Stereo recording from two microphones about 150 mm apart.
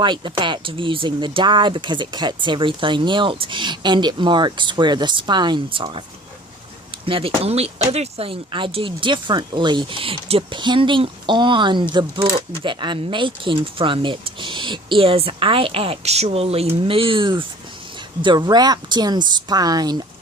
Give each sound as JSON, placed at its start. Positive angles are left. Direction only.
{"t": 0.0, "sound": "speech", "side_deg": -30}
{"t": 7.0, "sound": "a woman's voice", "side_deg": -40}